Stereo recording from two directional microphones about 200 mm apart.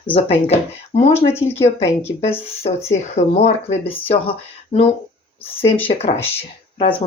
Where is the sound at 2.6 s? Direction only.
35° left (ahead or behind).